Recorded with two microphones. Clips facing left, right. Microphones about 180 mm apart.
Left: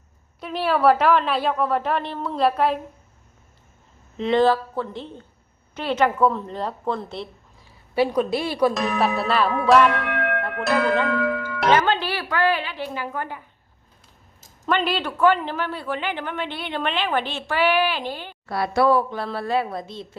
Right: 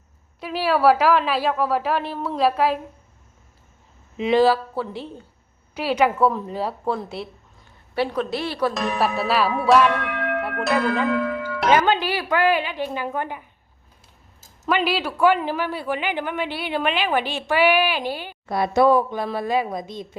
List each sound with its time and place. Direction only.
0.3 s a woman's voice: centre (ahead or behind)
4.2 s a woman's voice: 5° right (ahead or behind)
7.6 s a woman's voice: 10° left (ahead or behind)
8.7 s a woman's voice: centre (ahead or behind)
10.4 s music: centre (ahead or behind)
11.6 s a woman's voice: 10° right (ahead or behind)
14.7 s a woman's voice: 5° right (ahead or behind)